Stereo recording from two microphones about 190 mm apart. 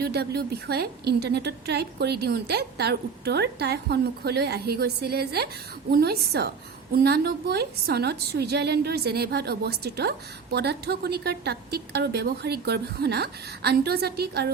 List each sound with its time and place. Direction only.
0.0 s a woman's voice: 60° right (ahead or behind)